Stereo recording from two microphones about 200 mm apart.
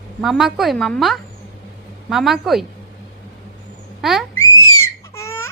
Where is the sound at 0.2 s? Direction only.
Centre (ahead or behind).